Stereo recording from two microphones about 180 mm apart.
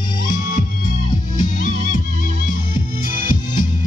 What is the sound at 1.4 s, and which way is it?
Music, 45° left (ahead or behind).